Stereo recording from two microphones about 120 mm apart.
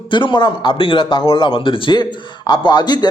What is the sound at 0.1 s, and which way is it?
A man's voice, 45° left (ahead or behind).